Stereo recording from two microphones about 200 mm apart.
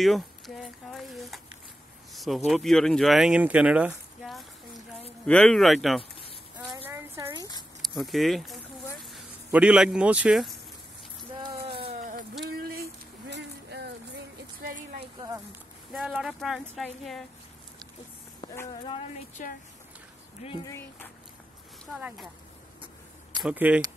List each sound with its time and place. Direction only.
0.0 s a sound: centre (ahead or behind)
2.1 s speech: centre (ahead or behind)
6.7 s a sound: 20° right (ahead or behind)
8.0 s speech: centre (ahead or behind)
11.9 s a sound: 40° right (ahead or behind); by 13.9 s 60° right (ahead or behind)
15.1 s a sound: 20° right (ahead or behind)
15.9 s speech: centre (ahead or behind)
18.4 s speech: 20° left (ahead or behind)
19.4 s speech: 40° left (ahead or behind)
20.4 s speech: 25° left (ahead or behind)
22.0 s speech: centre (ahead or behind)
23.4 s speech: 5° right (ahead or behind)